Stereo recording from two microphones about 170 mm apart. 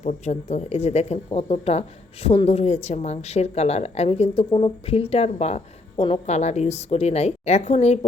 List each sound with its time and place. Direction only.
0.0 s a woman's voice: 45° left (ahead or behind)